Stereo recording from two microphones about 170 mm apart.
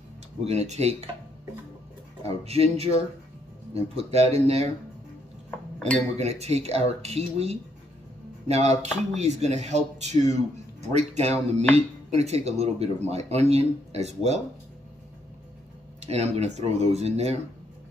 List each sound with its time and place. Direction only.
0.5 s speech: 40° right (ahead or behind)
2.2 s speech: 35° right (ahead or behind)
3.9 s speech: 35° right (ahead or behind)
6.1 s speech: 40° right (ahead or behind)
16.1 s speech: 40° right (ahead or behind)